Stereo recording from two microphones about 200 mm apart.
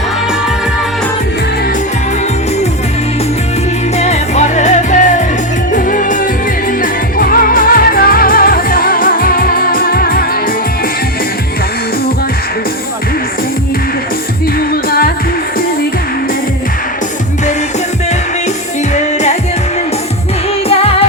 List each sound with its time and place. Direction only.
3.9 s music: 35° left (ahead or behind)
14.8 s music: 50° left (ahead or behind)